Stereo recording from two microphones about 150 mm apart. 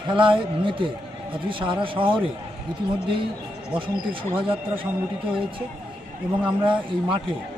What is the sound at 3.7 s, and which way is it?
Speech, 35° right (ahead or behind).